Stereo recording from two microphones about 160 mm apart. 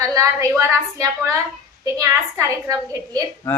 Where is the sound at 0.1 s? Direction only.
20° right (ahead or behind).